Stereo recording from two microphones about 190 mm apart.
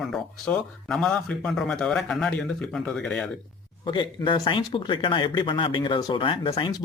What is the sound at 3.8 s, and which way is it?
Speech, 25° left (ahead or behind).